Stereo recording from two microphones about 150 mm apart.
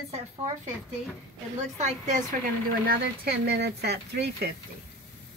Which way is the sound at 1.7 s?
55° right (ahead or behind).